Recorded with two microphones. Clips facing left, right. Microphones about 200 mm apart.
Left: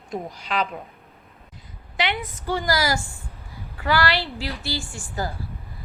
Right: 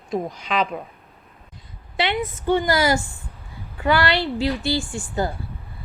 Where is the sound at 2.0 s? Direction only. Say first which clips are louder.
Right 4 dB; 25° right (ahead or behind).